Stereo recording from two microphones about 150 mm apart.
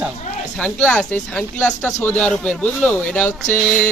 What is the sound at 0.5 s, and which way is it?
Speech, 5° left (ahead or behind).